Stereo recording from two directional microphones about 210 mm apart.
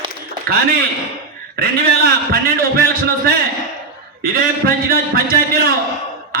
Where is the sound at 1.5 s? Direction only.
45° right (ahead or behind).